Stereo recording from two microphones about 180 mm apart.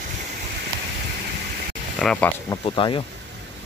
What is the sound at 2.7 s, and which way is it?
Speech, 30° left (ahead or behind).